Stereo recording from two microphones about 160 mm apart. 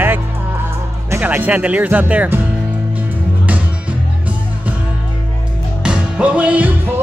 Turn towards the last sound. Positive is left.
turn(degrees=-10)  # may be behind; listen again after turning